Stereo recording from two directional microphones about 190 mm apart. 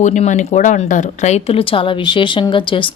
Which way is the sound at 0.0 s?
40° left (ahead or behind).